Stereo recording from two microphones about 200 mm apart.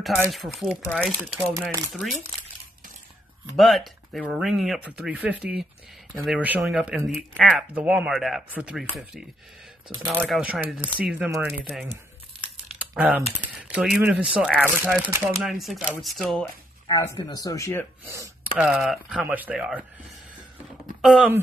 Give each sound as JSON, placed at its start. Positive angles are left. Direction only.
{"t": 0.3, "sound": "speech", "side_deg": 0}
{"t": 1.5, "sound": "speech", "side_deg": -15}
{"t": 1.9, "sound": "speech", "side_deg": 0}
{"t": 3.5, "sound": "speech", "side_deg": 0}
{"t": 12.7, "sound": "typing", "side_deg": -5}
{"t": 13.7, "sound": "speech", "side_deg": -5}
{"t": 15.4, "sound": "speech", "side_deg": 0}
{"t": 16.8, "sound": "speech", "side_deg": 20}
{"t": 18.1, "sound": "speech", "side_deg": -15}
{"t": 18.6, "sound": "speech", "side_deg": -5}
{"t": 21.0, "sound": "speech", "side_deg": -5}